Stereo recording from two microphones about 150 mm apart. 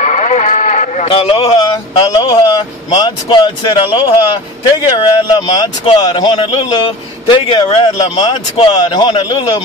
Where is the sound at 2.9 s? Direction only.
30° left (ahead or behind).